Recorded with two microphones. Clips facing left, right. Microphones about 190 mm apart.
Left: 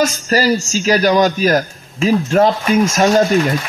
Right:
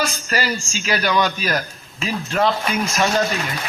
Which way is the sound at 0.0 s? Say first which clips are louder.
Left 8 dB; 40° left (ahead or behind).